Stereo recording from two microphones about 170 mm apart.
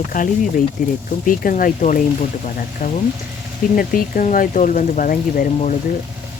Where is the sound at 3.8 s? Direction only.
55° left (ahead or behind).